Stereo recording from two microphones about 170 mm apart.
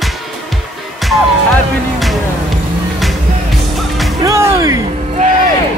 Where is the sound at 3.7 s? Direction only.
Centre (ahead or behind).